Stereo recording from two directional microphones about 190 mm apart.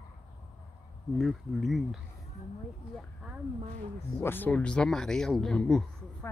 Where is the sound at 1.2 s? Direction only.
Centre (ahead or behind).